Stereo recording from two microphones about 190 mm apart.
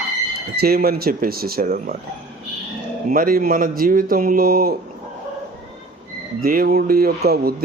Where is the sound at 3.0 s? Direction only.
50° right (ahead or behind).